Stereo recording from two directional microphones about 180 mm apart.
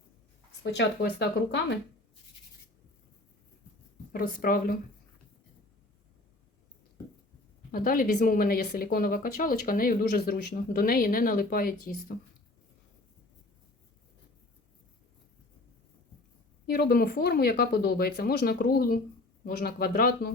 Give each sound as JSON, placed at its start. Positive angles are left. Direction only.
{"t": 0.6, "sound": "speech", "side_deg": 70}
{"t": 4.1, "sound": "speech", "side_deg": 55}
{"t": 7.7, "sound": "speech", "side_deg": 55}
{"t": 16.6, "sound": "speech", "side_deg": 60}